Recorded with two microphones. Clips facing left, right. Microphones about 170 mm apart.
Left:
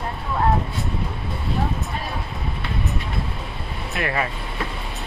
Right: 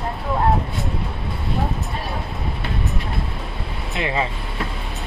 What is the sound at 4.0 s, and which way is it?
Speech, 20° right (ahead or behind).